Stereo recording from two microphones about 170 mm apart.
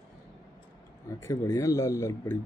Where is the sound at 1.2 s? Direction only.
20° left (ahead or behind).